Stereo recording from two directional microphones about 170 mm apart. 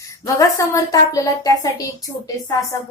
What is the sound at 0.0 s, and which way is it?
A woman's voice, 20° left (ahead or behind).